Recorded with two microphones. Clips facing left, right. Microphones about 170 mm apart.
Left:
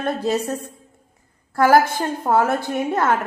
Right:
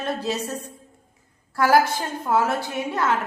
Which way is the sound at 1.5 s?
50° left (ahead or behind).